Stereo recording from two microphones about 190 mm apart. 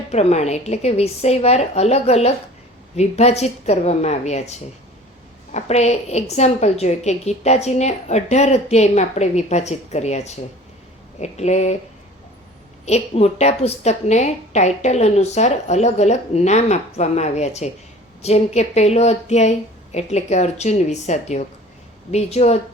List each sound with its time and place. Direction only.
0.1 s a woman's voice: 35° left (ahead or behind)
12.8 s a woman's voice: 35° left (ahead or behind)